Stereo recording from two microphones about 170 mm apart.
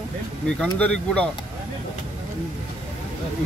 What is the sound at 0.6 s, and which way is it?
Speech, 5° left (ahead or behind).